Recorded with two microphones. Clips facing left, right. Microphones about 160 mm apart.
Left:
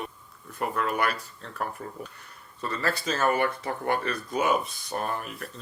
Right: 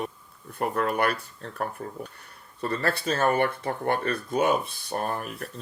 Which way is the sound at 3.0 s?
30° right (ahead or behind).